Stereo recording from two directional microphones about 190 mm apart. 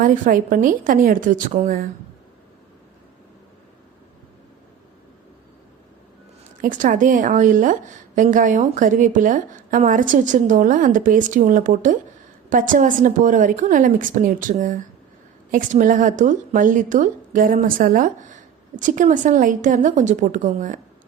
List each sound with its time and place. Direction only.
0.0 s a woman's voice: 45° right (ahead or behind)
6.6 s a woman's voice: 45° right (ahead or behind)